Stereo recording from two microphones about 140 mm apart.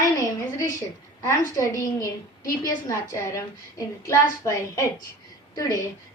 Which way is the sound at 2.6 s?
20° left (ahead or behind).